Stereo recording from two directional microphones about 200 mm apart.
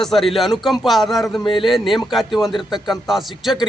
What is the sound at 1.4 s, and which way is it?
Speech, 25° left (ahead or behind).